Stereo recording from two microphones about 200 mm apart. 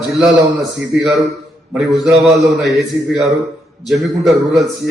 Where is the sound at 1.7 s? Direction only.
Centre (ahead or behind).